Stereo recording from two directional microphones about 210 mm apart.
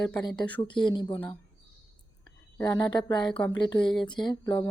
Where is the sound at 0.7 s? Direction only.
20° left (ahead or behind).